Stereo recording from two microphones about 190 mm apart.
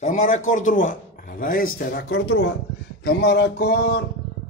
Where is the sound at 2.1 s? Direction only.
90° left.